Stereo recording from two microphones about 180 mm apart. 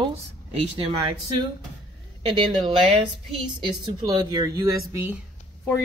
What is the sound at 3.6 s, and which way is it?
Speech, 25° right (ahead or behind).